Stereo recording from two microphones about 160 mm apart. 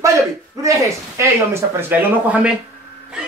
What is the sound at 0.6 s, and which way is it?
Speech, 20° right (ahead or behind).